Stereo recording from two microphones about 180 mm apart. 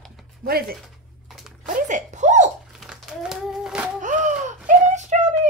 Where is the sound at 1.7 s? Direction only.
45° right (ahead or behind).